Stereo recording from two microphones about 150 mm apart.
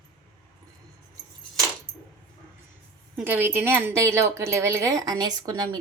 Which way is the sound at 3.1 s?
15° right (ahead or behind).